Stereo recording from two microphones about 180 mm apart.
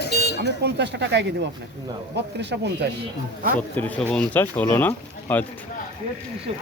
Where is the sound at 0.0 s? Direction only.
65° left (ahead or behind).